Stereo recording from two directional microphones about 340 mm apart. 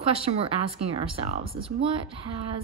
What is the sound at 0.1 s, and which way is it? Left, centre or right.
Speech, centre.